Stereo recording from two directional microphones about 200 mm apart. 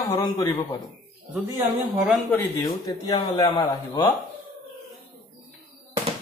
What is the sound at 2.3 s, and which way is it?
A man's voice, 15° left (ahead or behind).